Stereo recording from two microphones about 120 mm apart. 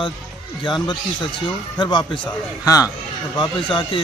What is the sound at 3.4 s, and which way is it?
Speech, 40° left (ahead or behind).